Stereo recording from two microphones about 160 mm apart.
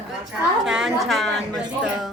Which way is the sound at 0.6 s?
Centre (ahead or behind).